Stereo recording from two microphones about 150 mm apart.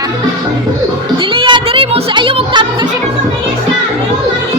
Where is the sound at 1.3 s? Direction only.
35° right (ahead or behind).